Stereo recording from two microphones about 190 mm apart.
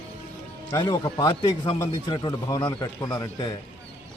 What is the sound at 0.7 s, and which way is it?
A man's voice, 20° left (ahead or behind).